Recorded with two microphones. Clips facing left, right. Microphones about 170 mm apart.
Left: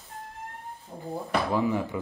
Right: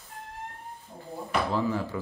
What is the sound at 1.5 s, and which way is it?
Speech, 15° left (ahead or behind).